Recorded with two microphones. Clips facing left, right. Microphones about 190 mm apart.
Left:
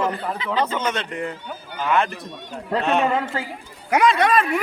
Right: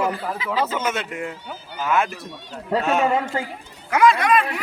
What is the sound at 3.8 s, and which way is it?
Speech, 20° left (ahead or behind).